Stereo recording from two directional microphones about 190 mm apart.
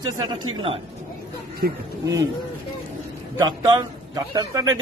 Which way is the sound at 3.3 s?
20° right (ahead or behind).